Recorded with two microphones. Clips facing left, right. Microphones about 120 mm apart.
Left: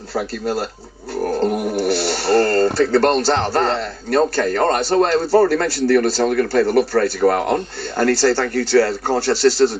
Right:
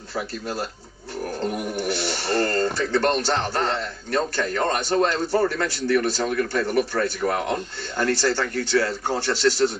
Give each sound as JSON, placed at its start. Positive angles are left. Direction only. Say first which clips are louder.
{"t": 0.1, "sound": "speech", "louder": "left 7 dB", "side_deg": 35}
{"t": 1.1, "sound": "roaring cats", "louder": "left 8 dB", "side_deg": 35}
{"t": 1.6, "sound": "speech", "louder": "left 7 dB", "side_deg": 35}